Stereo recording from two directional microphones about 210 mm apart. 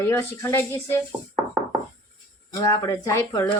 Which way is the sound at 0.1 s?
10° left (ahead or behind).